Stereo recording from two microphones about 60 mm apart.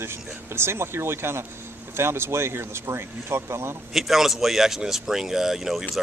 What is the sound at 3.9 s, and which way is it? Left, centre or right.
Speech, centre.